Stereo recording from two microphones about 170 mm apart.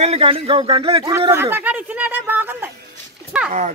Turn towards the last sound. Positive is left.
turn(degrees=-5)  # may be behind; listen again after turning